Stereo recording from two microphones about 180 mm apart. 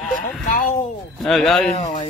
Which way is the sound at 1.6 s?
40° left (ahead or behind).